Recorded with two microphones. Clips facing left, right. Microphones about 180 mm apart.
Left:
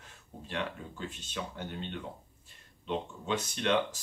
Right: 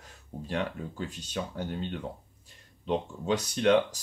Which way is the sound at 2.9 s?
40° right (ahead or behind).